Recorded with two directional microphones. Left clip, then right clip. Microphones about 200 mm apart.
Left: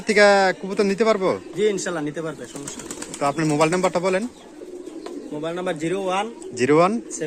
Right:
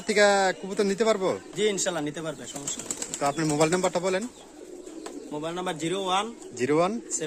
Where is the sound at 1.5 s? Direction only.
60° right (ahead or behind).